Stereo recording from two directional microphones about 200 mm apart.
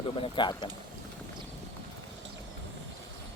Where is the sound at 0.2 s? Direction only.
25° left (ahead or behind).